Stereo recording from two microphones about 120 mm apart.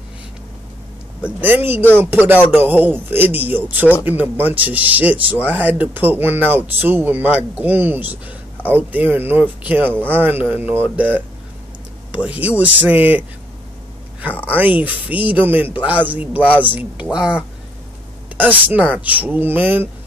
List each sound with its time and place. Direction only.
1.2 s speech: 15° right (ahead or behind)
14.3 s speech: 15° left (ahead or behind)
14.6 s speech: 15° right (ahead or behind)